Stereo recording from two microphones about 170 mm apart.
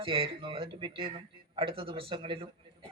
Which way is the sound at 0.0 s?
30° right (ahead or behind).